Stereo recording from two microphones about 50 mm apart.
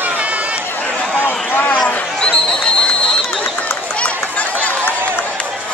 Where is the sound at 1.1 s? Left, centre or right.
Left.